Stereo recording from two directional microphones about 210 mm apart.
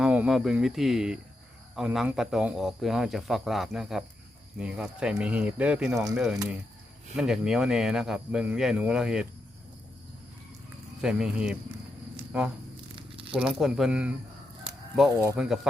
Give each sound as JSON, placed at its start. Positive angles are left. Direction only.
{"t": 0.0, "sound": "speech", "side_deg": -5}
{"t": 11.0, "sound": "speech", "side_deg": -5}
{"t": 13.0, "sound": "a sound", "side_deg": -25}
{"t": 13.3, "sound": "speech", "side_deg": -5}
{"t": 14.7, "sound": "a sound", "side_deg": 0}
{"t": 15.4, "sound": "speech", "side_deg": 0}